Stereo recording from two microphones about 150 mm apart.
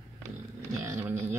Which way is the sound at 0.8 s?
15° right (ahead or behind).